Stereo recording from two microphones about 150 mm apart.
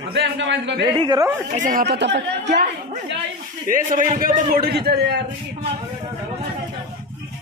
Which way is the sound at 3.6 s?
60° right (ahead or behind).